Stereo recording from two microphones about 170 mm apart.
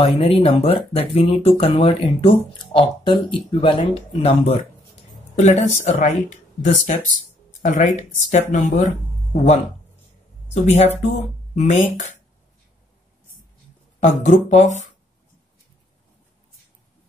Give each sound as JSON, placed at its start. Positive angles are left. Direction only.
{"t": 0.0, "sound": "speech", "side_deg": 35}
{"t": 13.9, "sound": "speech", "side_deg": 45}